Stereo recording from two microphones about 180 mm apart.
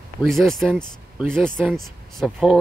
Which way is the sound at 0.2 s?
Centre (ahead or behind).